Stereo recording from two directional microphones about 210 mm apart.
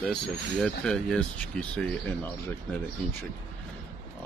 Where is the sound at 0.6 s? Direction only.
5° left (ahead or behind).